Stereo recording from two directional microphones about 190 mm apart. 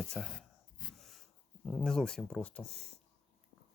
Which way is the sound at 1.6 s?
5° left (ahead or behind).